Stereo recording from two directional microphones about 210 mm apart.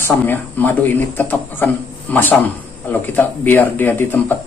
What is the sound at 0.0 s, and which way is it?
Speech, 10° left (ahead or behind).